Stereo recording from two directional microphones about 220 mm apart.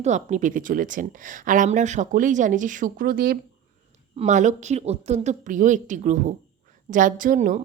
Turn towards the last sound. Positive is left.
turn(degrees=-35)  # may be behind; listen again after turning